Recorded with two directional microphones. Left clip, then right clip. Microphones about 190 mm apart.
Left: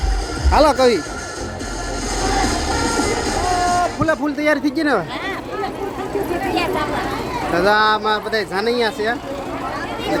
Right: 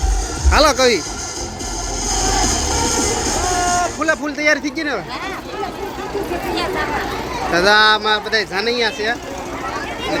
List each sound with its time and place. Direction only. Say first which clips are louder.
0.5 s speech: even; 5° left (ahead or behind)
2.0 s music: right 1 dB; 55° right (ahead or behind)
4.0 s speech: right 1 dB; 15° left (ahead or behind)
4.8 s speech: left 4 dB; 40° left (ahead or behind)
7.5 s speech: right 3 dB; centre (ahead or behind); by 9.1 s 20° left (ahead or behind)